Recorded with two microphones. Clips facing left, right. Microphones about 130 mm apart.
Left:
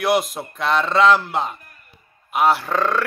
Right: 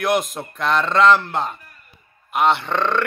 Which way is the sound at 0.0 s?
Centre (ahead or behind).